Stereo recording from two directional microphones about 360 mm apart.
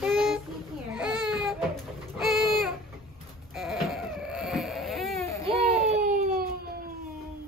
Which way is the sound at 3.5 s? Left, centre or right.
Centre.